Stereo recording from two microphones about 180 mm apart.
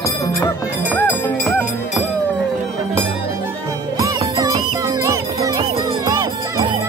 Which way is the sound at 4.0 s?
20° right (ahead or behind).